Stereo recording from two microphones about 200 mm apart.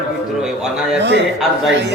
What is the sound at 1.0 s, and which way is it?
Speech, 60° right (ahead or behind).